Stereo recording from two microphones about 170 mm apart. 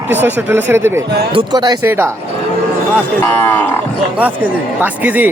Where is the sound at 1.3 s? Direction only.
25° right (ahead or behind).